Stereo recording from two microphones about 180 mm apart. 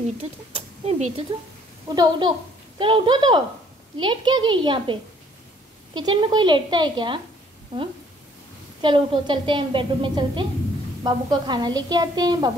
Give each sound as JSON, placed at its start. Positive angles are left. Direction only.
{"t": 0.2, "sound": "speech", "side_deg": -35}
{"t": 2.0, "sound": "a woman's voice", "side_deg": -25}
{"t": 5.9, "sound": "a woman's voice", "side_deg": -25}
{"t": 8.8, "sound": "a woman's voice", "side_deg": -30}